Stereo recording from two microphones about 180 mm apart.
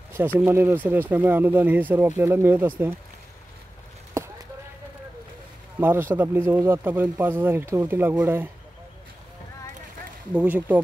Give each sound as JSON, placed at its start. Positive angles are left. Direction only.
{"t": 0.4, "sound": "speech", "side_deg": -15}
{"t": 4.2, "sound": "a sound", "side_deg": -15}
{"t": 5.8, "sound": "speech", "side_deg": -10}
{"t": 10.3, "sound": "speech", "side_deg": -10}